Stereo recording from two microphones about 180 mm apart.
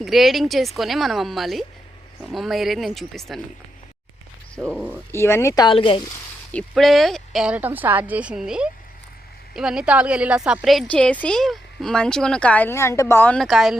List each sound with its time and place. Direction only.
0.0 s a woman's voice: centre (ahead or behind)
4.6 s a woman's voice: 5° left (ahead or behind); by 6.1 s 30° left (ahead or behind)
6.5 s a woman's voice: 5° left (ahead or behind)